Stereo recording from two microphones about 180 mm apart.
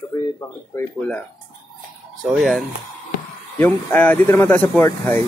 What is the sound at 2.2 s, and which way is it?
Speech, centre (ahead or behind).